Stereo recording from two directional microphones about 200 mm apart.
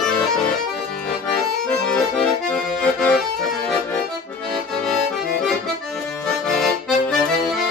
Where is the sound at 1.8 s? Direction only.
5° left (ahead or behind).